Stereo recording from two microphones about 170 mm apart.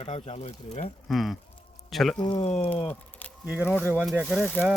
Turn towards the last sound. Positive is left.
turn(degrees=10)  # may be behind; listen again after turning